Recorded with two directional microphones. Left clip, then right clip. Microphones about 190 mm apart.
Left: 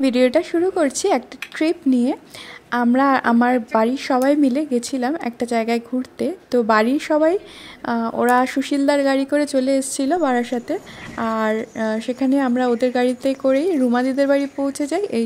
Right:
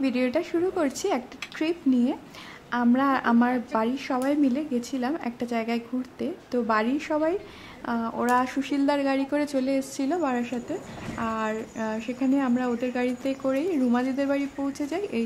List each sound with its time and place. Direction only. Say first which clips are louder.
0.0 s a woman's voice: left 9 dB; 30° left (ahead or behind)